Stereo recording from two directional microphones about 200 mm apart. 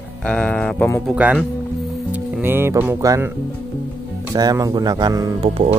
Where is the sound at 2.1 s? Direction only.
10° right (ahead or behind).